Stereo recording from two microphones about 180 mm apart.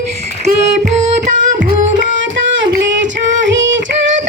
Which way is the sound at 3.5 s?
90° right.